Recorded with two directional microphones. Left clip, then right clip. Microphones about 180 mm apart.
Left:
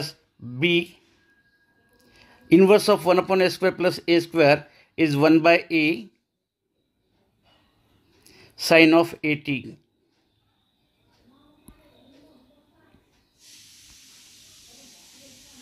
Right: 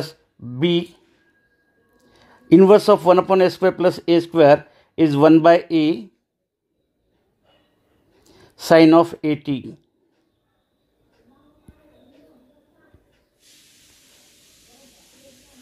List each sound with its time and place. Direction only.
0.0 s speech: 15° right (ahead or behind)
2.1 s a man's voice: 15° right (ahead or behind)
8.2 s speech: 15° right (ahead or behind)